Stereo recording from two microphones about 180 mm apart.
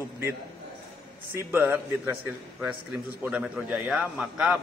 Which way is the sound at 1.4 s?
5° right (ahead or behind).